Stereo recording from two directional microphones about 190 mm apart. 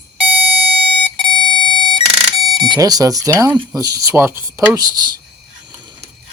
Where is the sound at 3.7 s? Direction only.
20° right (ahead or behind).